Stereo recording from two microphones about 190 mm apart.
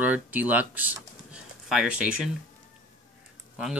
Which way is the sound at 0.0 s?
10° right (ahead or behind).